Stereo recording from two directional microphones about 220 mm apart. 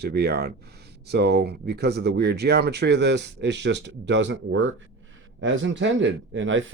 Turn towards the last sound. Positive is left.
turn(degrees=-60)  # may be behind; listen again after turning